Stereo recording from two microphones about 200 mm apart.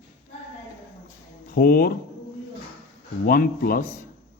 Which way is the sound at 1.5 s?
45° left (ahead or behind).